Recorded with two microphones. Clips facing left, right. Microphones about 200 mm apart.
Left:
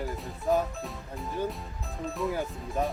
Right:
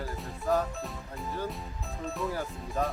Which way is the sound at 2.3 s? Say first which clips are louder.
Left 2 dB; 15° left (ahead or behind).